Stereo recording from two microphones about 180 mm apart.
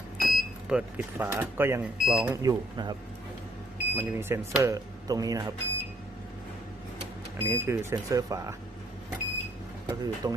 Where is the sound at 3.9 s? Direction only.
10° right (ahead or behind).